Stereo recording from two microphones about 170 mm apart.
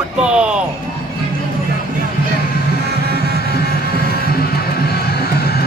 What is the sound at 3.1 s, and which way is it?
Music, 65° left (ahead or behind).